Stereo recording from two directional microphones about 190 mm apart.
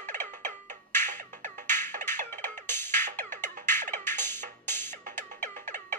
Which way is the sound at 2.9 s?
40° right (ahead or behind).